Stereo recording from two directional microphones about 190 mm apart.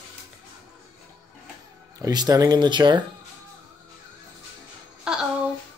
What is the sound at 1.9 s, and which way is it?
Speech, 20° right (ahead or behind).